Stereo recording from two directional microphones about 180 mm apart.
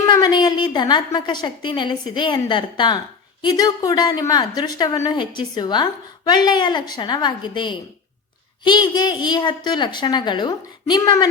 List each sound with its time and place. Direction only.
0.2 s a woman's voice: 25° left (ahead or behind)